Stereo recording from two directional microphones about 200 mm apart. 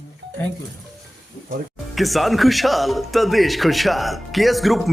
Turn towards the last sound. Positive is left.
turn(degrees=0)  # may be behind; listen again after turning